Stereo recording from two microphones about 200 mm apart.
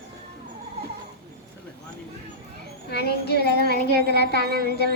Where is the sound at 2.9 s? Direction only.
55° left (ahead or behind).